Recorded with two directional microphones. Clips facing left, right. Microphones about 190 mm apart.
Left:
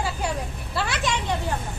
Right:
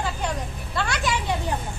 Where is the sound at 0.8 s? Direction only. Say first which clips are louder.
Even; centre (ahead or behind).